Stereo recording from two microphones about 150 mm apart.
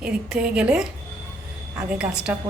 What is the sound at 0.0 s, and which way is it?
Speech, 5° right (ahead or behind).